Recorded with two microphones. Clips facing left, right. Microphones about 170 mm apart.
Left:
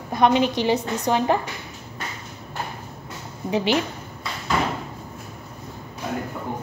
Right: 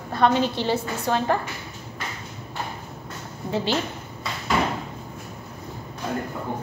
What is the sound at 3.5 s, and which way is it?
Speech, 15° left (ahead or behind).